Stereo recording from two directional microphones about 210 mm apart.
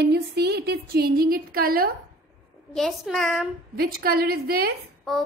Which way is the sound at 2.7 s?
Centre (ahead or behind).